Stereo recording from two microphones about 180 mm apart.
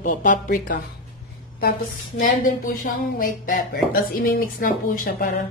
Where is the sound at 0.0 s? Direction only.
50° left (ahead or behind).